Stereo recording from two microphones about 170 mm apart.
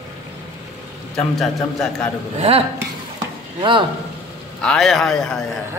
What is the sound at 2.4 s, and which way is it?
Speech, 35° right (ahead or behind).